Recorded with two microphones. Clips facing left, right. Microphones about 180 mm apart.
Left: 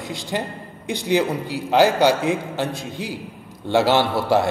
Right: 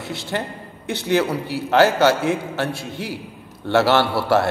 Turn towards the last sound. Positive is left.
turn(degrees=15)  # may be behind; listen again after turning